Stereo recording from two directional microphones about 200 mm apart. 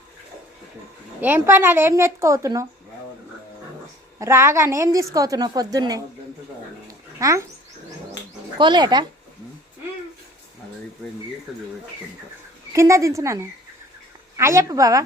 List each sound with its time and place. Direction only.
1.2 s a woman's voice: 10° right (ahead or behind)
4.2 s a woman's voice: 15° right (ahead or behind)
6.8 s dog: 15° right (ahead or behind)
8.5 s speech: 25° right (ahead or behind)
12.7 s a woman's voice: 15° right (ahead or behind)